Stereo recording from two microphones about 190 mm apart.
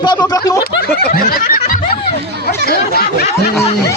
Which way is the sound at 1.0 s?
50° left (ahead or behind).